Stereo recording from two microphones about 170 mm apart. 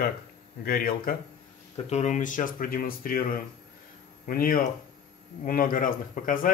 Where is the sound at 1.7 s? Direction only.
40° left (ahead or behind).